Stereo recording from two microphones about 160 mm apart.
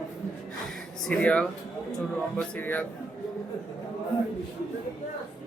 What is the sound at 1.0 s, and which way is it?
Speech, 5° left (ahead or behind).